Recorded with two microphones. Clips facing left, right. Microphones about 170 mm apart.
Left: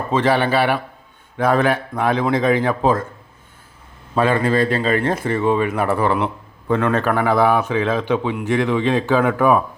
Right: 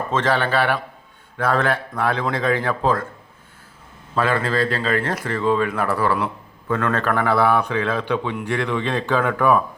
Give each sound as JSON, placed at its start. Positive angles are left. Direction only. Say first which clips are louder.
{"t": 0.1, "sound": "speech", "louder": "left 4 dB", "side_deg": 10}
{"t": 4.1, "sound": "speech", "louder": "left 4 dB", "side_deg": 20}